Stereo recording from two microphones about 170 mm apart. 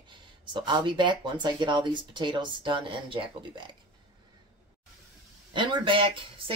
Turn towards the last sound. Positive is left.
turn(degrees=-30)  # may be behind; listen again after turning